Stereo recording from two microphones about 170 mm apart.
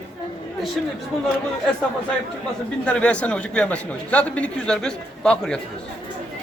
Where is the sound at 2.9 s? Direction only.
5° left (ahead or behind).